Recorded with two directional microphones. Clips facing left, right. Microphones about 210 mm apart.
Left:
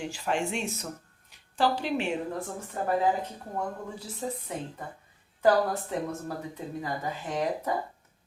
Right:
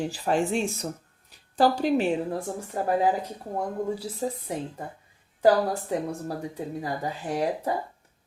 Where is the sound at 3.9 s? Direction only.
35° right (ahead or behind).